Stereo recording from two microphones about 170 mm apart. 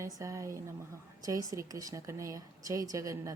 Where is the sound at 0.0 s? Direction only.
20° right (ahead or behind).